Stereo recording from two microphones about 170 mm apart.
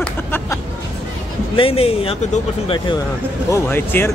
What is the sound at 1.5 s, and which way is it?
Speech, 35° left (ahead or behind).